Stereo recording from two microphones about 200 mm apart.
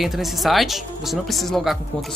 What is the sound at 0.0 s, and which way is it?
Speech, centre (ahead or behind).